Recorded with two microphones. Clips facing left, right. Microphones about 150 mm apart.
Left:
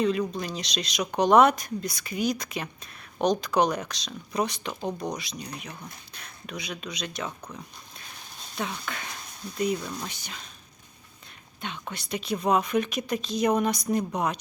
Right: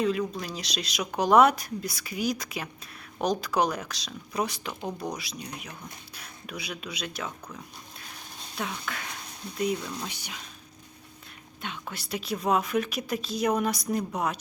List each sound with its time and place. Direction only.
0.0 s speech: centre (ahead or behind)
7.5 s a sound: 5° right (ahead or behind)
8.5 s speech: centre (ahead or behind)
10.1 s speech: 10° right (ahead or behind)
11.6 s speech: centre (ahead or behind)